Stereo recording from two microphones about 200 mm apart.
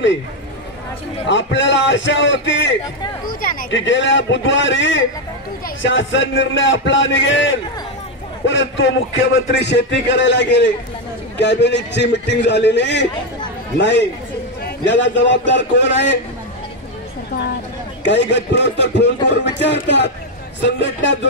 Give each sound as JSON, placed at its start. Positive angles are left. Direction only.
{"t": 1.2, "sound": "a man's voice", "side_deg": 65}
{"t": 3.3, "sound": "speech", "side_deg": 45}
{"t": 3.7, "sound": "a man's voice", "side_deg": 65}
{"t": 18.0, "sound": "a man's voice", "side_deg": 60}